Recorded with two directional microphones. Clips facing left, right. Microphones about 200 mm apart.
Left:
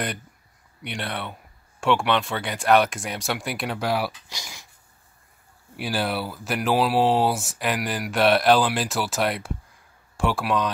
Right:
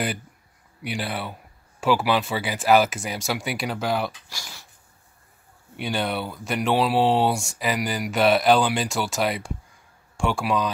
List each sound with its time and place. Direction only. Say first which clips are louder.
0.8 s speech: right 2 dB; 5° right (ahead or behind)
4.3 s speech: left 1 dB; 15° left (ahead or behind)
5.8 s speech: even; 5° left (ahead or behind)